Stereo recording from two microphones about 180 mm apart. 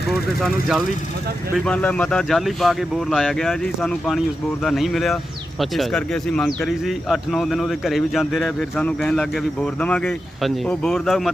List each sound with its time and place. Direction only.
0.1 s speech: centre (ahead or behind)